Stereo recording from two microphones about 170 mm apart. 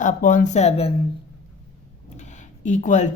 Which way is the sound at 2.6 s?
45° left (ahead or behind).